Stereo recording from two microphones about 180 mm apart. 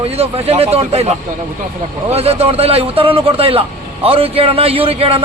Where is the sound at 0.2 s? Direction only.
35° right (ahead or behind).